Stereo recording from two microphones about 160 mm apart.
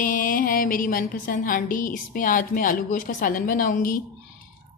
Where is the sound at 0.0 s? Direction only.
60° left (ahead or behind).